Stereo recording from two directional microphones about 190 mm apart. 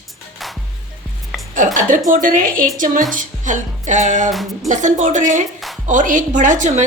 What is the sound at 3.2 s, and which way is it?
Music, 40° right (ahead or behind).